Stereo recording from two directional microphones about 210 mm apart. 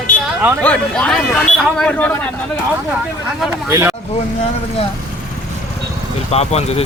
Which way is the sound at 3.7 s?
10° right (ahead or behind).